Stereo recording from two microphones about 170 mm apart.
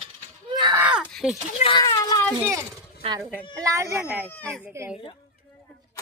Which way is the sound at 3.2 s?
10° right (ahead or behind).